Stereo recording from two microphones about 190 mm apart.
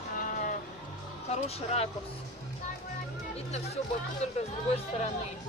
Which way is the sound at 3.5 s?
35° left (ahead or behind).